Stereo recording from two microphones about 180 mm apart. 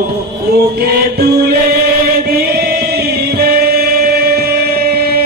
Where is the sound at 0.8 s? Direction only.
60° right (ahead or behind).